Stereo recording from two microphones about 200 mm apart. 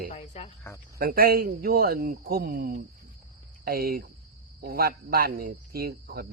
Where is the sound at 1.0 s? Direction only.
45° right (ahead or behind).